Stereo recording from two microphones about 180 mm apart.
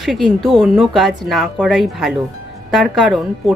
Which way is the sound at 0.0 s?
Centre (ahead or behind).